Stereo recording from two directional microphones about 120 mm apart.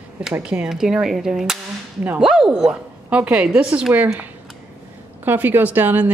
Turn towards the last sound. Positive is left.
turn(degrees=-15)  # may be behind; listen again after turning